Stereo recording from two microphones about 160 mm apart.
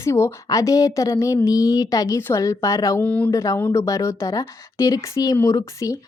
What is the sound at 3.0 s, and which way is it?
Speech, 10° left (ahead or behind).